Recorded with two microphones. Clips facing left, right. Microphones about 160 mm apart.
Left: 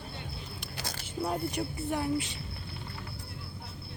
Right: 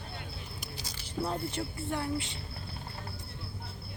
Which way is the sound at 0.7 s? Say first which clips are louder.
Left 5 dB; 55° left (ahead or behind).